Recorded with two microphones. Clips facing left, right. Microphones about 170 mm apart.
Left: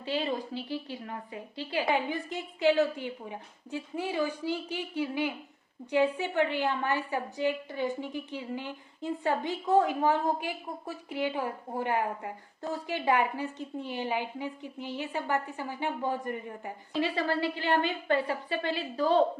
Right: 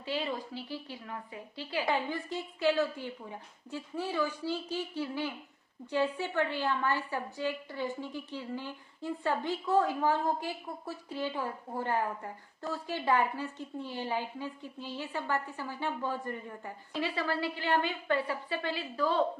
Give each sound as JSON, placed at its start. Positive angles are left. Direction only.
{"t": 0.0, "sound": "speech", "side_deg": 20}
{"t": 1.0, "sound": "a woman's voice", "side_deg": 35}
{"t": 1.5, "sound": "a woman's voice", "side_deg": 20}